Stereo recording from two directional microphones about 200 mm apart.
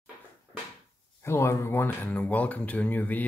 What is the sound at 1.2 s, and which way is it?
Speech, 15° left (ahead or behind).